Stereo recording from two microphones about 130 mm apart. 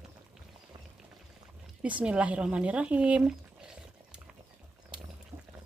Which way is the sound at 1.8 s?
10° right (ahead or behind).